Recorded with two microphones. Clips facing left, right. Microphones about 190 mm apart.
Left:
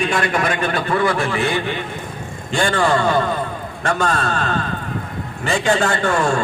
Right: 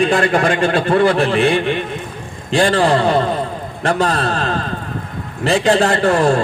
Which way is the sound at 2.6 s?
35° right (ahead or behind).